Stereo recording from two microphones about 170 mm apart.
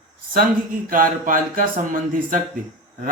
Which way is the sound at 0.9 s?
50° right (ahead or behind).